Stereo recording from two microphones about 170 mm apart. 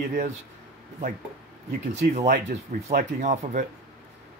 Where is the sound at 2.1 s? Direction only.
50° right (ahead or behind).